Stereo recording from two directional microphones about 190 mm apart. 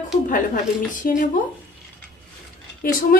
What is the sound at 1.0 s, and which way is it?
Speech, 50° left (ahead or behind).